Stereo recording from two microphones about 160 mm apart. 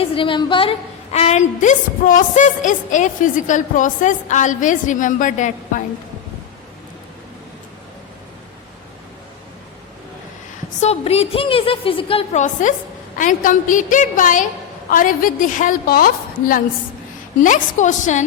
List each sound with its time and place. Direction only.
0.0 s a woman's voice: 35° left (ahead or behind); by 5.8 s 55° left (ahead or behind)
10.8 s a woman's voice: 40° left (ahead or behind)
12.6 s a woman's voice: 50° left (ahead or behind)
17.4 s a woman's voice: 50° left (ahead or behind)